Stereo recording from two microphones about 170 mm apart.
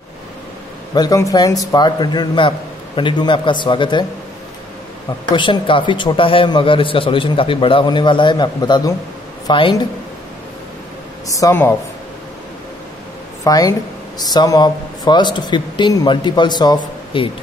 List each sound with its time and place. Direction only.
0.9 s speech: 20° left (ahead or behind)
5.3 s speech: 30° left (ahead or behind)
11.2 s speech: 20° left (ahead or behind)
13.4 s speech: 20° left (ahead or behind)